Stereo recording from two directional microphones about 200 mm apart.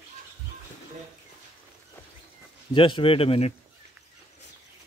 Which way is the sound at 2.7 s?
25° left (ahead or behind).